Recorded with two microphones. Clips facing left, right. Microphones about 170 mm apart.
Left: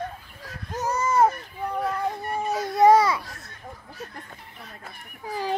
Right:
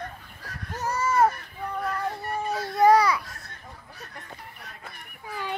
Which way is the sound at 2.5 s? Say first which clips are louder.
Left 2 dB; 20° left (ahead or behind).